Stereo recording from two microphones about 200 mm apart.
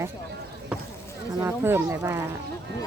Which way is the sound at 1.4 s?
10° right (ahead or behind).